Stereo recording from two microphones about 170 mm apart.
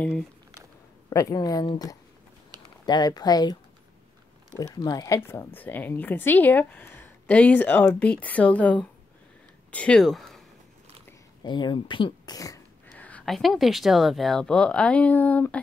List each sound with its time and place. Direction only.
1.1 s speech: 20° left (ahead or behind)
4.6 s a woman's voice: 20° left (ahead or behind); by 10.4 s centre (ahead or behind)
11.4 s speech: 25° left (ahead or behind)
12.9 s speech: 10° left (ahead or behind)